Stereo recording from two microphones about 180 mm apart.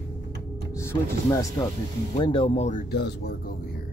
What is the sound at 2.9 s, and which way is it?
Speech, 65° left (ahead or behind).